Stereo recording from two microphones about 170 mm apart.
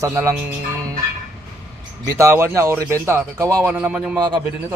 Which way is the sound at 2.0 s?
15° right (ahead or behind).